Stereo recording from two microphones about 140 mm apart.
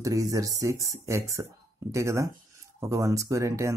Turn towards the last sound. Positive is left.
turn(degrees=-20)  # may be behind; listen again after turning